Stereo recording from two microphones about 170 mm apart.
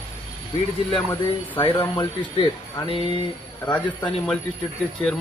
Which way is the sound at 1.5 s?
30° left (ahead or behind).